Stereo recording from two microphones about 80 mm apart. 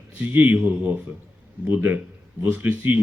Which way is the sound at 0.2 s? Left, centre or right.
Centre.